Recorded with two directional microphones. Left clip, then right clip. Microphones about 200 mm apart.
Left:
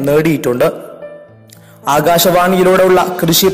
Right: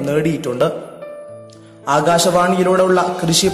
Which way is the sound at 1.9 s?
35° left (ahead or behind).